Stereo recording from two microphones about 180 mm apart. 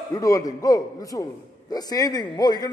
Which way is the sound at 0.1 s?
20° left (ahead or behind).